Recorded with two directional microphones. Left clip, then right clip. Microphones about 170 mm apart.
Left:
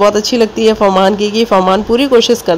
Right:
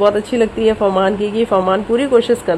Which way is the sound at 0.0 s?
25° left (ahead or behind).